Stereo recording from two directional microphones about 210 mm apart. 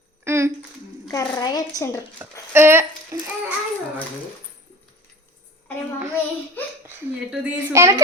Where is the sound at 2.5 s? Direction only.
10° right (ahead or behind).